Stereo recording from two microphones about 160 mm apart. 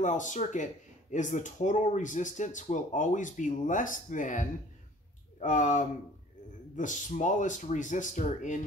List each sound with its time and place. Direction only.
0.0 s speech: 50° left (ahead or behind)